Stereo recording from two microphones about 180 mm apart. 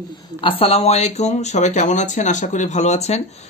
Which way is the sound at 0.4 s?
30° left (ahead or behind).